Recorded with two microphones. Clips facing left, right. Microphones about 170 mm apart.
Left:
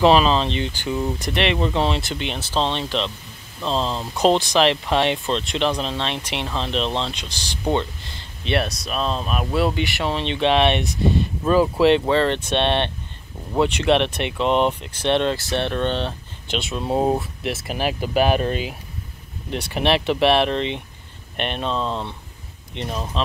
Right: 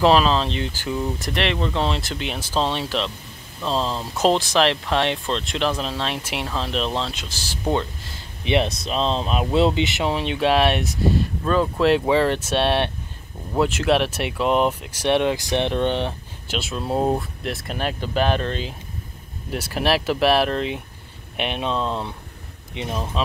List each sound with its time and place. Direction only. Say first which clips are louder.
0.0 s speech: left 1 dB; centre (ahead or behind)
8.5 s speech: right 2 dB; 20° right (ahead or behind); by 11.9 s 10° left (ahead or behind)
11.9 s speech: even; 10° right (ahead or behind)
16.5 s speech: left 1 dB; centre (ahead or behind)
19.5 s speech: left 1 dB; centre (ahead or behind)